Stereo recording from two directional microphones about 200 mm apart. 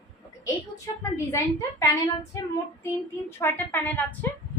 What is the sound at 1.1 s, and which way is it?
A woman's voice, 15° left (ahead or behind).